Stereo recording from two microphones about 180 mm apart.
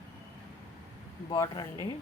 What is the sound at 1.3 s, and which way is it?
Speech, 20° left (ahead or behind).